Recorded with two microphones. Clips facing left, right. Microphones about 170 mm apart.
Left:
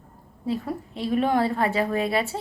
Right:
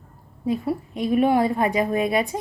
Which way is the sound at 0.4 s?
10° right (ahead or behind).